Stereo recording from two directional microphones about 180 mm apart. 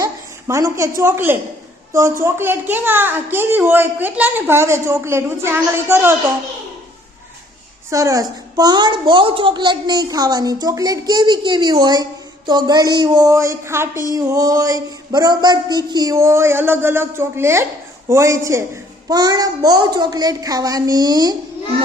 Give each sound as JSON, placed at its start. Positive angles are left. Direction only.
{"t": 0.0, "sound": "a woman's voice", "side_deg": -15}
{"t": 7.9, "sound": "a woman's voice", "side_deg": -15}